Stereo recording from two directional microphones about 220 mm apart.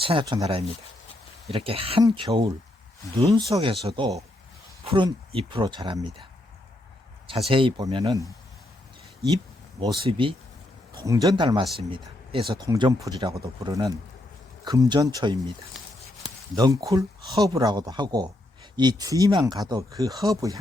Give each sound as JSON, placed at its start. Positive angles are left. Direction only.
{"t": 0.0, "sound": "speech", "side_deg": -25}
{"t": 7.3, "sound": "speech", "side_deg": -25}
{"t": 9.8, "sound": "speech", "side_deg": -20}
{"t": 16.6, "sound": "speech", "side_deg": -15}